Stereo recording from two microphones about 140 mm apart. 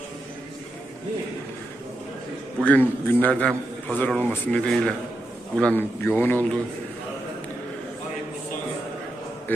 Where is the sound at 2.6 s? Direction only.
10° left (ahead or behind).